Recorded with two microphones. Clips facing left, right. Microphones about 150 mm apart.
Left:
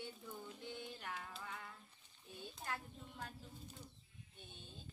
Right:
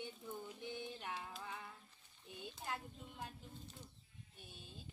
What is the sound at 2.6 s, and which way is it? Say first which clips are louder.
Speech: even; 15° right (ahead or behind).